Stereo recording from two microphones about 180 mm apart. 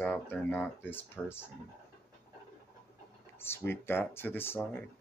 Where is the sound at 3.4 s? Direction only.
10° left (ahead or behind).